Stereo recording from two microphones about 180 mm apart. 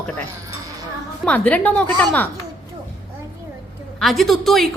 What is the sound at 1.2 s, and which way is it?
Speech, 10° left (ahead or behind).